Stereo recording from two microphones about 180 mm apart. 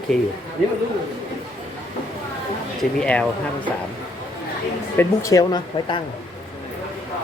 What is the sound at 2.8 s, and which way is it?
Speech, 5° left (ahead or behind).